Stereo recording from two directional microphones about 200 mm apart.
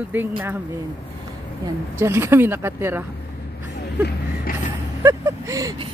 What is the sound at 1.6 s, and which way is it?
Speech, 10° right (ahead or behind).